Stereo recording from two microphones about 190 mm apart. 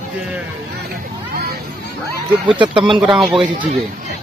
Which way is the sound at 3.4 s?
25° right (ahead or behind).